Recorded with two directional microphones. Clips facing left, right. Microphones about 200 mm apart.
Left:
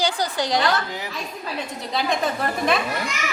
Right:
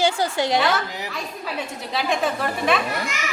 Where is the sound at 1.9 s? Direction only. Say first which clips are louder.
Even; centre (ahead or behind).